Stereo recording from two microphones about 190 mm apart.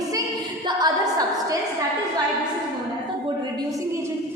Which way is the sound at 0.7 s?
20° right (ahead or behind).